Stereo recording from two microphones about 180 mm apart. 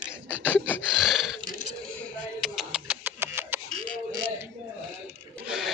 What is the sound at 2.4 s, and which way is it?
Music, 5° right (ahead or behind).